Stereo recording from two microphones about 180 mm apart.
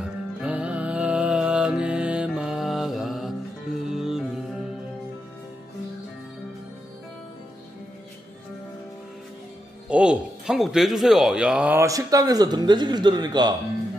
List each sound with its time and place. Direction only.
0.0 s music: 5° right (ahead or behind)
9.8 s speech: 5° right (ahead or behind); by 13.6 s 25° right (ahead or behind)